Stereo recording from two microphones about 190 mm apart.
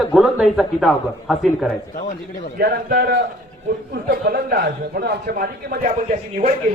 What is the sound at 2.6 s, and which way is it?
A man's voice, 55° right (ahead or behind).